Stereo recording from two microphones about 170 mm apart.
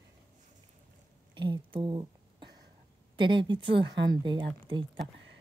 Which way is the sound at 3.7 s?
90° right.